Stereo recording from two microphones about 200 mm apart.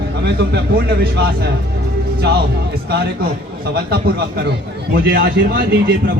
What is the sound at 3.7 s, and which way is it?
A man's voice, 50° right (ahead or behind).